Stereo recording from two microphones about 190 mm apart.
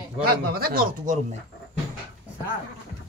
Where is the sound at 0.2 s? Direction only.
55° right (ahead or behind).